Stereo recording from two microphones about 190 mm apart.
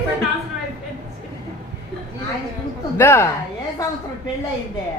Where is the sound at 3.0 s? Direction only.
15° left (ahead or behind).